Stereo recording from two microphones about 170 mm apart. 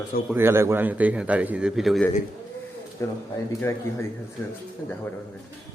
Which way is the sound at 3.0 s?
20° left (ahead or behind).